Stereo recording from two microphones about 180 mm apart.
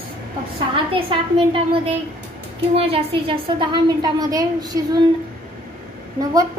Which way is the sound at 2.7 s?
30° right (ahead or behind).